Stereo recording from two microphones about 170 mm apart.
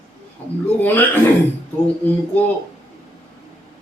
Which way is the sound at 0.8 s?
10° left (ahead or behind).